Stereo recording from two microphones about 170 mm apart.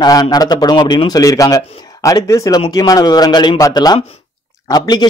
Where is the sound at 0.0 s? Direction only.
25° left (ahead or behind).